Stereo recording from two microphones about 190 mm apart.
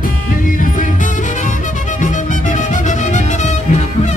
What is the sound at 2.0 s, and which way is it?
Music, 40° left (ahead or behind).